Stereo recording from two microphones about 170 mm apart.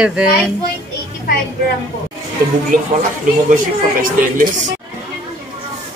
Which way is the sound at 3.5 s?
50° right (ahead or behind).